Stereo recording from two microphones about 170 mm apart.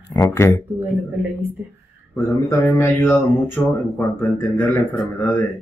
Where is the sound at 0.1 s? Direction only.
20° left (ahead or behind).